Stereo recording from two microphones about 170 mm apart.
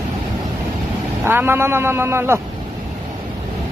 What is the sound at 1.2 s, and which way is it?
A man's voice, 15° right (ahead or behind).